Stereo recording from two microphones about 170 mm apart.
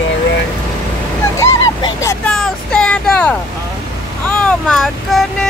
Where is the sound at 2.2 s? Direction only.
5° left (ahead or behind).